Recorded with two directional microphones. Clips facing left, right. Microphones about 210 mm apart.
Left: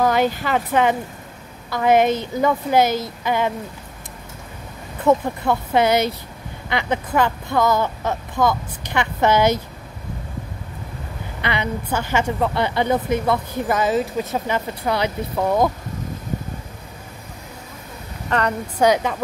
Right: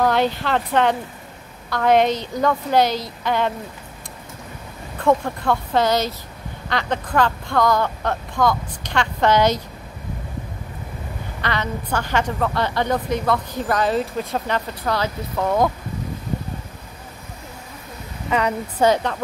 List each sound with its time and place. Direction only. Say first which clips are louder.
0.0 s a woman's voice: left 1 dB; 5° left (ahead or behind)
4.9 s a woman's voice: left 1 dB; 5° left (ahead or behind)
11.4 s a woman's voice: left 1 dB; 10° left (ahead or behind)
18.8 s a woman's voice: left 1 dB; 10° left (ahead or behind)